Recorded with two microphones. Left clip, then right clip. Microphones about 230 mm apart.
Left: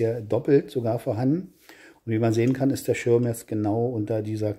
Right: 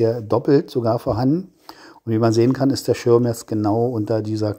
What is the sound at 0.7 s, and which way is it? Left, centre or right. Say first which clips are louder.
Speech: right 6 dB; centre.